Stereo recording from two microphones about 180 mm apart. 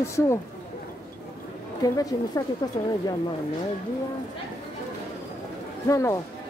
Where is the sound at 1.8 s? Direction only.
20° left (ahead or behind).